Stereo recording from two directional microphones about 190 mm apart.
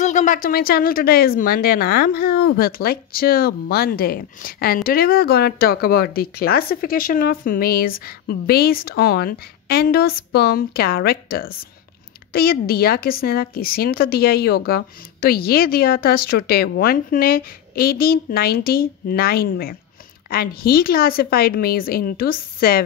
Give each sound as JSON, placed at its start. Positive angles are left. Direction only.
{"t": 0.0, "sound": "speech", "side_deg": 40}